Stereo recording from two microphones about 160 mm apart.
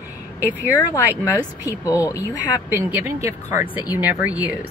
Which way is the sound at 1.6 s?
20° left (ahead or behind).